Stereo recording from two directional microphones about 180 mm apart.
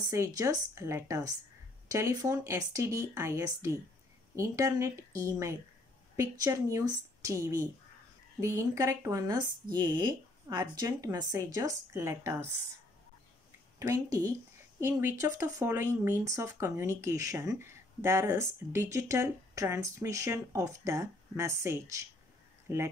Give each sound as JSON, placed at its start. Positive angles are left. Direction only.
{"t": 0.1, "sound": "speech", "side_deg": -20}
{"t": 13.7, "sound": "speech", "side_deg": -20}